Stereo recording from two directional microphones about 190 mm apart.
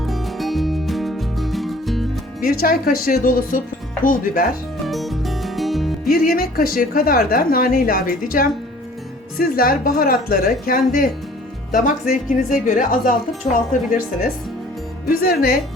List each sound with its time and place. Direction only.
0.0 s music: centre (ahead or behind)
2.4 s a woman's voice: 50° left (ahead or behind)
4.9 s music: centre (ahead or behind)
6.2 s a woman's voice: 50° left (ahead or behind)
12.6 s a woman's voice: 45° left (ahead or behind)